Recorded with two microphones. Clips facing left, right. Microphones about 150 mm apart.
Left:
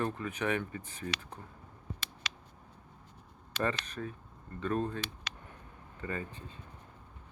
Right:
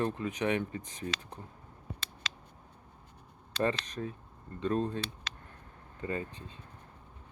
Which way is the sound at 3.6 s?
20° right (ahead or behind).